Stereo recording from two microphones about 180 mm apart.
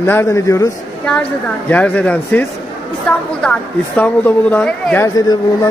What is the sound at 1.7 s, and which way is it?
Speech, 10° left (ahead or behind).